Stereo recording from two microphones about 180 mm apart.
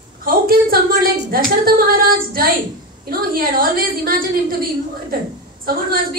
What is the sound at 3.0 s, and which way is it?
A woman's voice, 55° right (ahead or behind).